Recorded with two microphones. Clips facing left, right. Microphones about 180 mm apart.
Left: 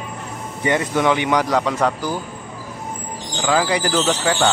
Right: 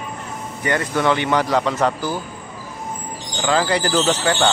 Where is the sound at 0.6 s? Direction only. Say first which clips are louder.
Left 2 dB; 20° left (ahead or behind).